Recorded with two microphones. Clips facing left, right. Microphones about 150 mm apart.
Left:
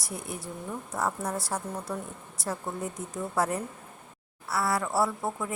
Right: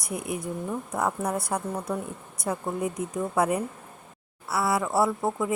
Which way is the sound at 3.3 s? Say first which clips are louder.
Right 3 dB; 15° right (ahead or behind).